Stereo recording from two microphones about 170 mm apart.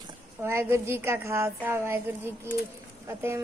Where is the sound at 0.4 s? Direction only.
15° right (ahead or behind).